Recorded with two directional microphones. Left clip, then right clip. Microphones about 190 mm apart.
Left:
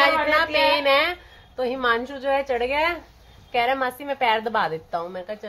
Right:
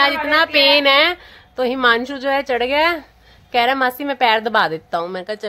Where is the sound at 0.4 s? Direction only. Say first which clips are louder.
Right 6 dB; 50° right (ahead or behind).